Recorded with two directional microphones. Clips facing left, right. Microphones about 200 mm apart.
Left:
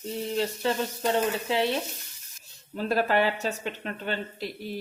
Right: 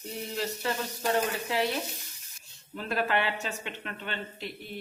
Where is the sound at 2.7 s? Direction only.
35° left (ahead or behind).